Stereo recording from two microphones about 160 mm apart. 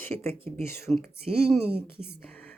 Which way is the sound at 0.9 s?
Centre (ahead or behind).